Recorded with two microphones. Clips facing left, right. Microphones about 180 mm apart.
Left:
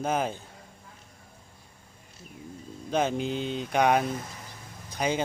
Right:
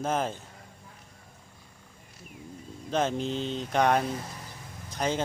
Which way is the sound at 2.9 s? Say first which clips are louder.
Left 1 dB; 5° left (ahead or behind).